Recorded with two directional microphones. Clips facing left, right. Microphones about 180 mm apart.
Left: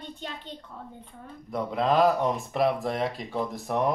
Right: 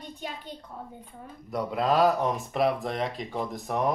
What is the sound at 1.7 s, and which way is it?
Speech, 5° right (ahead or behind).